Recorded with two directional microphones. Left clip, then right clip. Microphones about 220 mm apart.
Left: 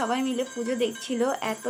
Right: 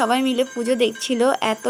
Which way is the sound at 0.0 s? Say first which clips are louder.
Right 8 dB; 45° right (ahead or behind).